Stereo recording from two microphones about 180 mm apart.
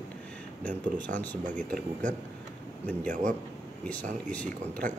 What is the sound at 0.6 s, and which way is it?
Speech, 10° left (ahead or behind).